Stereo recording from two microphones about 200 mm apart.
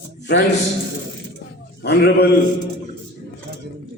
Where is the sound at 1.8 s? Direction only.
55° left (ahead or behind).